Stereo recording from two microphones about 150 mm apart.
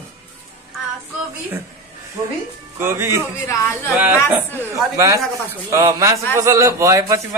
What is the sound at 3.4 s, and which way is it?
Speech, 15° left (ahead or behind).